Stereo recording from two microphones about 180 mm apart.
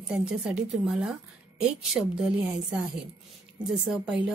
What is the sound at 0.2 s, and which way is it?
A woman's voice, 5° right (ahead or behind).